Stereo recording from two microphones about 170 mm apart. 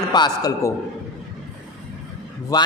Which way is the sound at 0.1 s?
25° left (ahead or behind).